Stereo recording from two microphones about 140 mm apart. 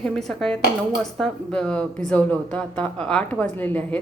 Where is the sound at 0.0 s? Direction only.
5° left (ahead or behind).